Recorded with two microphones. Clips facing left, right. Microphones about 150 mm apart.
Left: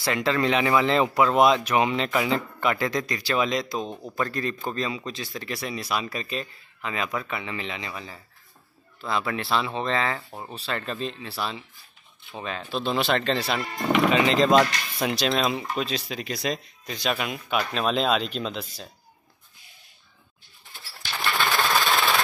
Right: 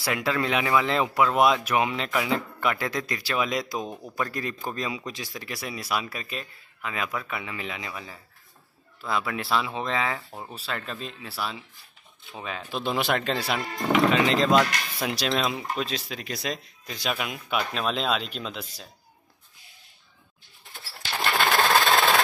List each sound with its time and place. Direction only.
0.0 s a man's voice: 5° right (ahead or behind)
13.9 s speech: centre (ahead or behind)
21.5 s engine: 35° right (ahead or behind)